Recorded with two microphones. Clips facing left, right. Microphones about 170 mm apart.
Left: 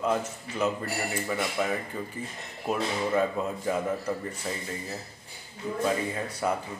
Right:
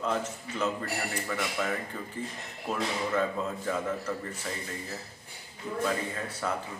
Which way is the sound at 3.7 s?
15° left (ahead or behind).